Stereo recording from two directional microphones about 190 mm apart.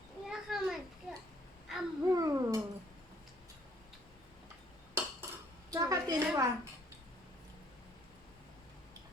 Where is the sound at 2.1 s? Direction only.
15° right (ahead or behind).